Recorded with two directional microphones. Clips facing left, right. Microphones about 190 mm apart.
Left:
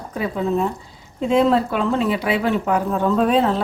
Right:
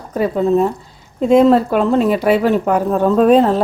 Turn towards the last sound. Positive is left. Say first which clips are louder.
# right 6 dB
turn(degrees=-45)  # may be behind; listen again after turning